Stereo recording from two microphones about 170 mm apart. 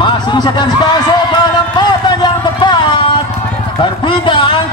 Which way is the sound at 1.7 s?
25° left (ahead or behind).